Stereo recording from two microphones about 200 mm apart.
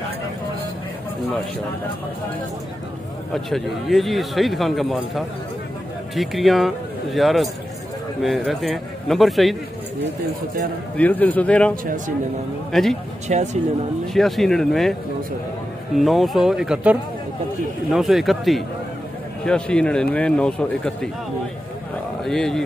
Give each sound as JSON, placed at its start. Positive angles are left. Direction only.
{"t": 3.3, "sound": "speech", "side_deg": 0}
{"t": 11.0, "sound": "a man's voice", "side_deg": 10}
{"t": 11.7, "sound": "a man's voice", "side_deg": -45}
{"t": 12.7, "sound": "speech", "side_deg": 0}
{"t": 13.3, "sound": "speech", "side_deg": -35}
{"t": 14.1, "sound": "speech", "side_deg": 0}
{"t": 16.0, "sound": "speech", "side_deg": 0}
{"t": 22.2, "sound": "speech", "side_deg": 0}